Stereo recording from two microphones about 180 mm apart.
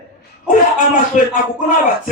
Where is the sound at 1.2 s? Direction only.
45° left (ahead or behind).